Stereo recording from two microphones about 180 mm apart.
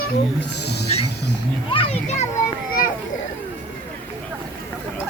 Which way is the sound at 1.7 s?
30° left (ahead or behind).